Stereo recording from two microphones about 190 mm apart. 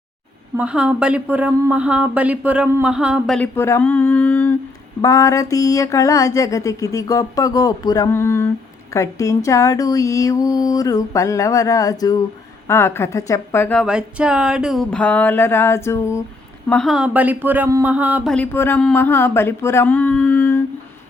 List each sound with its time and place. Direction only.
0.5 s a woman's voice: 5° right (ahead or behind)
13.8 s speech: 5° right (ahead or behind); by 16.2 s 15° left (ahead or behind)
16.6 s speech: centre (ahead or behind)
18.3 s speech: 10° left (ahead or behind)